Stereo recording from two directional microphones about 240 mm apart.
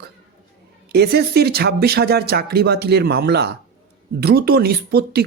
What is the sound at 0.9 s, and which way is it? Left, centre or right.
Speech, right.